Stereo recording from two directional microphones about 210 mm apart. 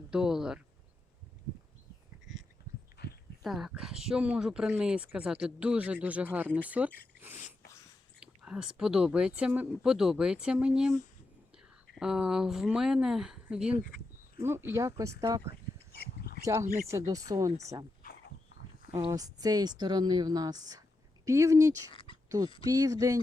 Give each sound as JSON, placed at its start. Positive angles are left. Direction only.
{"t": 0.1, "sound": "speech", "side_deg": -5}
{"t": 3.0, "sound": "heart sounds", "side_deg": 55}
{"t": 3.4, "sound": "speech", "side_deg": 0}
{"t": 7.3, "sound": "sneeze", "side_deg": 35}
{"t": 8.2, "sound": "speech", "side_deg": -5}
{"t": 11.9, "sound": "speech", "side_deg": -5}
{"t": 16.0, "sound": "a sound", "side_deg": 45}
{"t": 16.4, "sound": "speech", "side_deg": -15}
{"t": 18.0, "sound": "a sound", "side_deg": 50}
{"t": 18.9, "sound": "speech", "side_deg": -15}
{"t": 21.9, "sound": "a sound", "side_deg": 25}
{"t": 22.6, "sound": "speech", "side_deg": -15}